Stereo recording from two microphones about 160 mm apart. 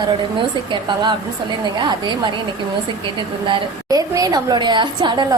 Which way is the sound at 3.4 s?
20° right (ahead or behind).